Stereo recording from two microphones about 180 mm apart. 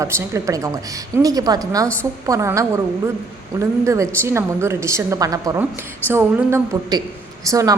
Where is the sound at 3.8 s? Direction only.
15° right (ahead or behind).